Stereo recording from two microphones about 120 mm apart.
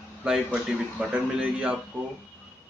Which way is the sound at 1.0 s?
10° right (ahead or behind).